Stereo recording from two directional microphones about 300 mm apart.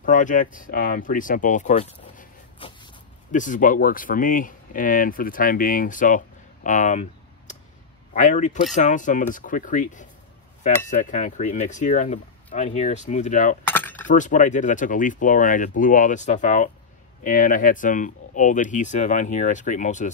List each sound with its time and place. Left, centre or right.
0.0 s speech: left
13.7 s coin: centre
14.0 s speech: left